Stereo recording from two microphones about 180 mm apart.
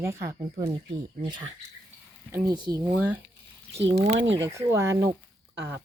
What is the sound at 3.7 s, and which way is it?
Speech, 35° right (ahead or behind).